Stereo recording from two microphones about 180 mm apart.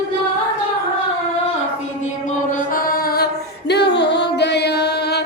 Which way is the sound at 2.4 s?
50° left (ahead or behind).